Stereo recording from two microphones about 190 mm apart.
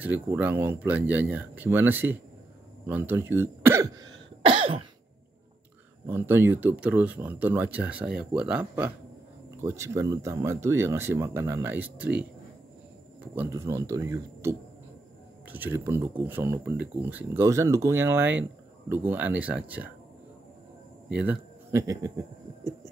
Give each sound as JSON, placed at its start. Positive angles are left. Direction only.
{"t": 0.0, "sound": "speech", "side_deg": -10}
{"t": 6.0, "sound": "speech", "side_deg": -10}
{"t": 21.1, "sound": "speech", "side_deg": -10}